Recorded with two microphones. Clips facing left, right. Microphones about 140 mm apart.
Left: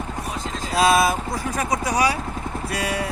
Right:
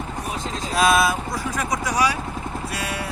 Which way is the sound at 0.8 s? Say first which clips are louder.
Left 1 dB; 30° left (ahead or behind).